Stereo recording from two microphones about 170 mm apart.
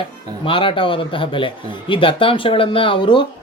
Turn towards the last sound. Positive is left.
turn(degrees=30)  # may be behind; listen again after turning